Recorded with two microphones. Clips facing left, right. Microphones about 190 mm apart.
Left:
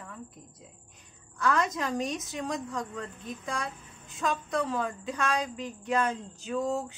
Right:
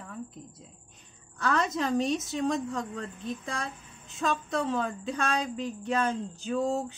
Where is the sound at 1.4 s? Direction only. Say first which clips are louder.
Even; 30° right (ahead or behind).